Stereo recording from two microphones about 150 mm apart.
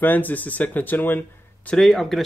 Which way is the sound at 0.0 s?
10° left (ahead or behind).